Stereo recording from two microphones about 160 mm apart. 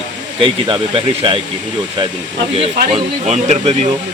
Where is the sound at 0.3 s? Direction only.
30° right (ahead or behind).